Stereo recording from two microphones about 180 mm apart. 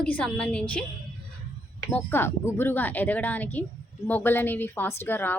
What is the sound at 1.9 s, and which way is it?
A woman's voice, 10° left (ahead or behind).